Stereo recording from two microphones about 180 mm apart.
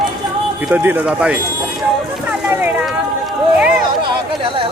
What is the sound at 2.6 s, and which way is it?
Run, 5° right (ahead or behind).